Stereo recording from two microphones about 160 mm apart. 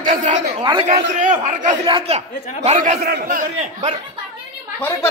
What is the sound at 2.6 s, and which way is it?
A man's voice, 50° right (ahead or behind).